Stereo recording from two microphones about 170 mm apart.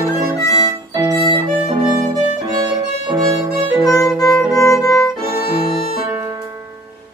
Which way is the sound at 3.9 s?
20° left (ahead or behind).